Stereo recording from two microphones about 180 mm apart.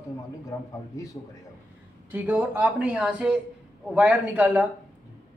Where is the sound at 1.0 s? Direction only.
20° left (ahead or behind).